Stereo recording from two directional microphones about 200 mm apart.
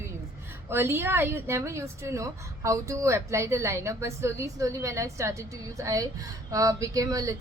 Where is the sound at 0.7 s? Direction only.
10° right (ahead or behind).